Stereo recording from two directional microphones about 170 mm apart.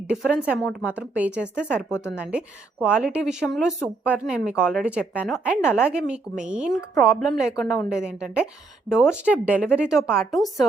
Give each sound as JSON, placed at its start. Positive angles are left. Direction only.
{"t": 0.1, "sound": "a woman's voice", "side_deg": -5}
{"t": 1.7, "sound": "speech", "side_deg": 10}
{"t": 2.1, "sound": "a woman's voice", "side_deg": -5}